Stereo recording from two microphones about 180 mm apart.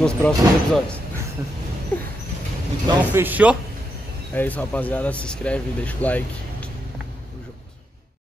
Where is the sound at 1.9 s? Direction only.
10° left (ahead or behind).